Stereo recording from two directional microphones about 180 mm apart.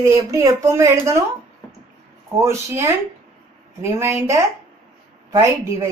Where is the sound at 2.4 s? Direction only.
15° right (ahead or behind).